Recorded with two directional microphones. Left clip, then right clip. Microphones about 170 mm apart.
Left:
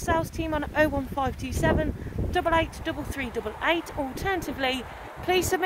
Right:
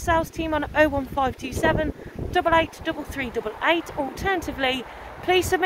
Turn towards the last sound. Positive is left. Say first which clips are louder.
# right 4 dB
turn(degrees=5)  # may be behind; listen again after turning